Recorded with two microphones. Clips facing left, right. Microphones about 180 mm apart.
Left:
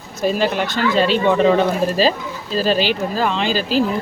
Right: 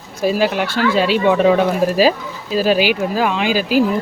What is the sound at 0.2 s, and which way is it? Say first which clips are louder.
Speech: right 2 dB; 10° right (ahead or behind).